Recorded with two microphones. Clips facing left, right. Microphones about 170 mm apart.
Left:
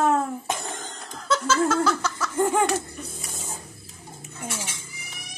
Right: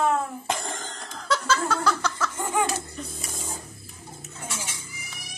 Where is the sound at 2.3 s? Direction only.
55° left (ahead or behind).